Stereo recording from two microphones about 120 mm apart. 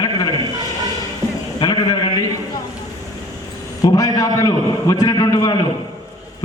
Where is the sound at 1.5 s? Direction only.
40° left (ahead or behind).